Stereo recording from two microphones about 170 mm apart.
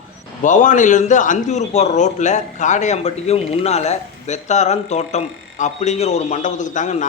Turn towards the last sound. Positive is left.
turn(degrees=45)  # may be behind; listen again after turning